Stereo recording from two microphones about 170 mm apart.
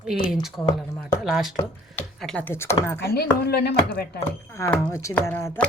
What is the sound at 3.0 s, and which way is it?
Speech, 70° left (ahead or behind).